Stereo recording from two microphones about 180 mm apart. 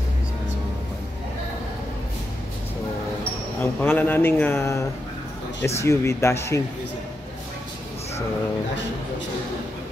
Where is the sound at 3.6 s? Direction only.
10° left (ahead or behind).